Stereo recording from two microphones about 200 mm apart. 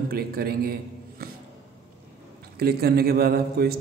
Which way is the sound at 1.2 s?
50° right (ahead or behind).